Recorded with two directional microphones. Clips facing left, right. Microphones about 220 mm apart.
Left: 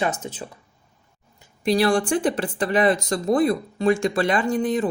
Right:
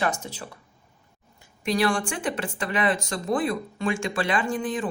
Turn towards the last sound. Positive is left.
turn(degrees=40)  # may be behind; listen again after turning